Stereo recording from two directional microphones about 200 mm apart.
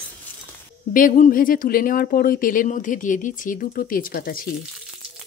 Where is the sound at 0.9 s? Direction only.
40° left (ahead or behind).